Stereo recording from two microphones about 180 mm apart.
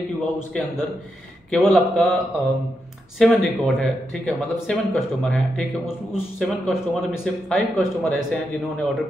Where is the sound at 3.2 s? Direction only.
Centre (ahead or behind).